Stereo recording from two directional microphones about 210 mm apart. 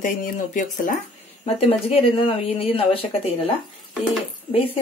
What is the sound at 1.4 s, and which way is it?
Speech, 30° left (ahead or behind).